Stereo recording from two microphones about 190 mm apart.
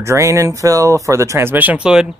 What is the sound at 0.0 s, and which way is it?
Speech, 15° right (ahead or behind).